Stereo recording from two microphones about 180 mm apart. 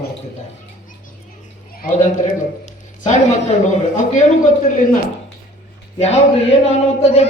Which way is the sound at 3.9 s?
45° left (ahead or behind).